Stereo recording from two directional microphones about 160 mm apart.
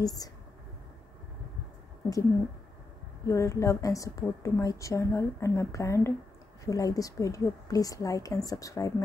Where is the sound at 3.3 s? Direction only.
20° left (ahead or behind).